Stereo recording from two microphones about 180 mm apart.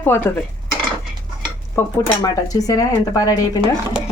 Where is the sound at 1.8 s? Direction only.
15° left (ahead or behind).